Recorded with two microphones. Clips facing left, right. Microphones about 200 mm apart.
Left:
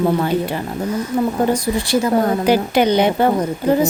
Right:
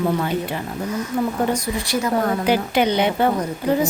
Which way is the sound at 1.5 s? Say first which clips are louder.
Left 5 dB; 30° left (ahead or behind).